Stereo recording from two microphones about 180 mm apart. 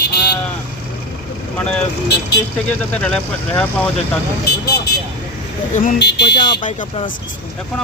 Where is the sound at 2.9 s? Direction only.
5° left (ahead or behind).